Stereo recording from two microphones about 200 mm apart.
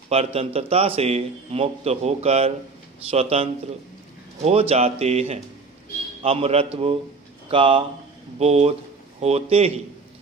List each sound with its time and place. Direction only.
0.1 s a man's voice: 30° right (ahead or behind)